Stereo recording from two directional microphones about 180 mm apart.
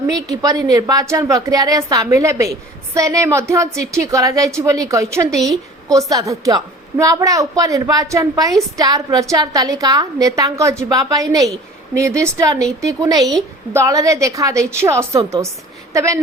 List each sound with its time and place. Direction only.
0.1 s a woman's voice: 20° right (ahead or behind)